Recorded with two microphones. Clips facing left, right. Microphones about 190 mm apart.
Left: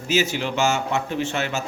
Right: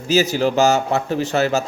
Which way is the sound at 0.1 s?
35° right (ahead or behind).